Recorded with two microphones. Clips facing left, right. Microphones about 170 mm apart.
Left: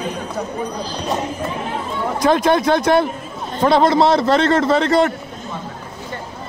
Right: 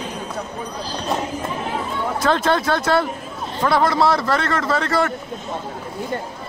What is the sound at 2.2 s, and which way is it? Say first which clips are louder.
A man's voice: left 4 dB; 15° left (ahead or behind).